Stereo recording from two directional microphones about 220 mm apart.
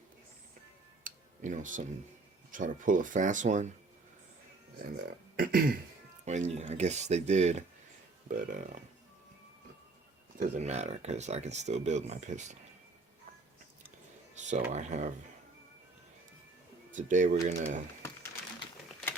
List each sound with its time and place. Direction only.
1.0 s tick-tock: 35° right (ahead or behind)
2.5 s speech: 35° right (ahead or behind)
4.8 s speech: 40° right (ahead or behind)
10.3 s speech: 30° right (ahead or behind)
14.3 s speech: 35° right (ahead or behind)
16.9 s speech: 35° right (ahead or behind)